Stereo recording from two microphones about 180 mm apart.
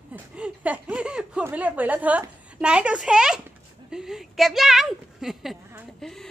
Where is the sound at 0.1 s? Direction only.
10° right (ahead or behind).